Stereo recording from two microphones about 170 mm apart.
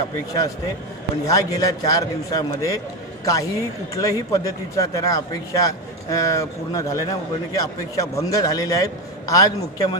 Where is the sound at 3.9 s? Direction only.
20° left (ahead or behind).